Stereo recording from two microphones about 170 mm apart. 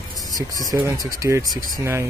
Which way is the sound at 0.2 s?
20° left (ahead or behind).